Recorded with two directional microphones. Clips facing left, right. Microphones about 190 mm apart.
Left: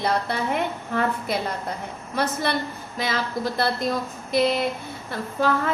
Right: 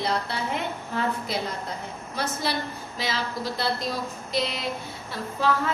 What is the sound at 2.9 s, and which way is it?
A woman's voice, 55° left (ahead or behind).